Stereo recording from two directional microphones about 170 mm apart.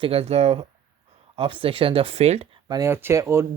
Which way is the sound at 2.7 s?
15° right (ahead or behind).